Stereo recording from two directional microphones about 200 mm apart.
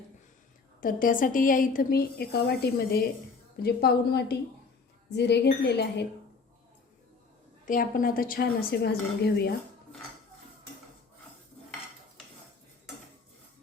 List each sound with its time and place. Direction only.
0.8 s a woman's voice: 45° left (ahead or behind)
7.6 s a woman's voice: 40° left (ahead or behind)